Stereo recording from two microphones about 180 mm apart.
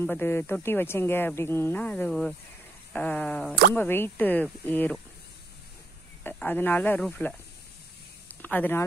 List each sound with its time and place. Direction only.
0.0 s speech: 10° left (ahead or behind)
6.2 s speech: 10° left (ahead or behind)
8.4 s speech: 10° left (ahead or behind)